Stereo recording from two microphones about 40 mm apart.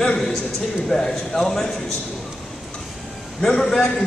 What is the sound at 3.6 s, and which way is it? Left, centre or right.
Speech, centre.